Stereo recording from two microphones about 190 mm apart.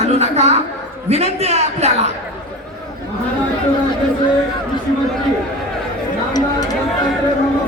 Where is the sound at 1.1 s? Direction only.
35° right (ahead or behind).